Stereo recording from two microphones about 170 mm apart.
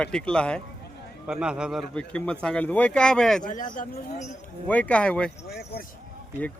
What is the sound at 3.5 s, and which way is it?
Speech, 50° left (ahead or behind).